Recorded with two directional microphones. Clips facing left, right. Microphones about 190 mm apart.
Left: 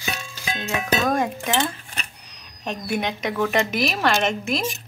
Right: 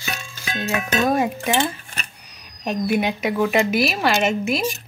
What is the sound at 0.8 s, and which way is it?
Speech, 10° right (ahead or behind).